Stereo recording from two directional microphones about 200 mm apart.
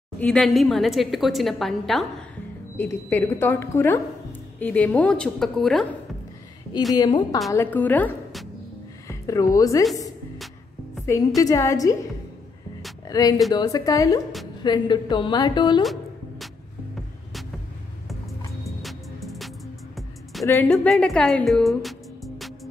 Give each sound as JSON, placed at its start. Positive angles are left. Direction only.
{"t": 0.2, "sound": "a woman's voice", "side_deg": 5}
{"t": 6.9, "sound": "a woman's voice", "side_deg": 20}
{"t": 7.5, "sound": "a woman's voice", "side_deg": 10}
{"t": 9.0, "sound": "a woman's voice", "side_deg": 15}
{"t": 11.4, "sound": "a woman's voice", "side_deg": 15}
{"t": 13.1, "sound": "a woman's voice", "side_deg": 20}
{"t": 15.8, "sound": "music", "side_deg": 0}
{"t": 16.9, "sound": "hum", "side_deg": 0}
{"t": 18.8, "sound": "music", "side_deg": 0}
{"t": 20.4, "sound": "a woman's voice", "side_deg": 10}